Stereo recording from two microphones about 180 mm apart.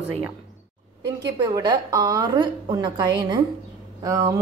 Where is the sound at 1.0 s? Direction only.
25° right (ahead or behind).